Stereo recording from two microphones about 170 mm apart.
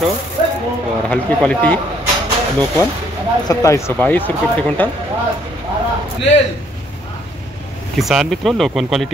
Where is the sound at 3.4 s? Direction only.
20° left (ahead or behind).